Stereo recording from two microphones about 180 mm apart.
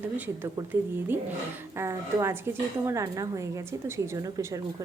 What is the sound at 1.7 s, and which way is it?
A woman's voice, 15° right (ahead or behind).